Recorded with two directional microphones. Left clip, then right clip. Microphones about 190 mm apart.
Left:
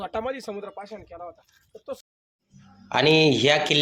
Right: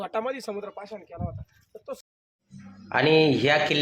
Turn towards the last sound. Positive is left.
turn(degrees=30)  # may be behind; listen again after turning